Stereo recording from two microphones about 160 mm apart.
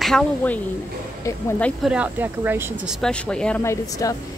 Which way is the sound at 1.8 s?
10° right (ahead or behind).